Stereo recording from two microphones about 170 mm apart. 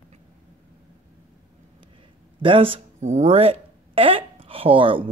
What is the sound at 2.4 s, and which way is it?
Speech, 30° right (ahead or behind).